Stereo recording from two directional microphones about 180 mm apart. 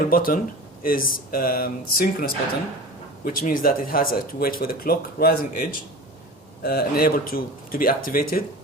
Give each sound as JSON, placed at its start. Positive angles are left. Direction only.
{"t": 0.0, "sound": "speech", "side_deg": 50}